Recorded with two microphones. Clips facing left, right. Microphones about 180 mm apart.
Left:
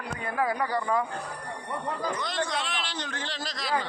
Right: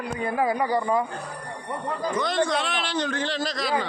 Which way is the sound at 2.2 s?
60° right (ahead or behind).